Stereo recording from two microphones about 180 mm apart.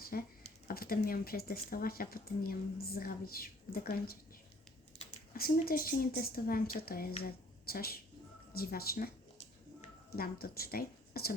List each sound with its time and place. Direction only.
0.1 s speech: 55° left (ahead or behind)
5.3 s speech: 55° left (ahead or behind)
10.2 s speech: 55° left (ahead or behind)